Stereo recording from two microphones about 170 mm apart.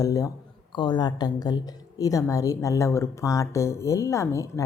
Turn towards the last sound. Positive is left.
turn(degrees=15)  # may be behind; listen again after turning